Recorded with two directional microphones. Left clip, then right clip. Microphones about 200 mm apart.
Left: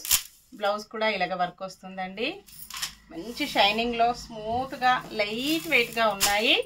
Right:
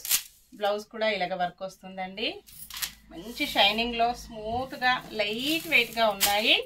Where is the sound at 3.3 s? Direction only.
10° left (ahead or behind).